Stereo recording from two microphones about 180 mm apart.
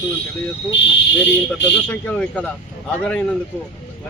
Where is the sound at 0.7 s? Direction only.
80° left.